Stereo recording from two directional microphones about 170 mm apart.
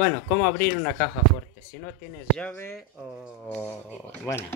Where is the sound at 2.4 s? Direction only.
15° left (ahead or behind).